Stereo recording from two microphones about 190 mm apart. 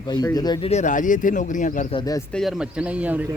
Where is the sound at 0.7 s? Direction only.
40° left (ahead or behind).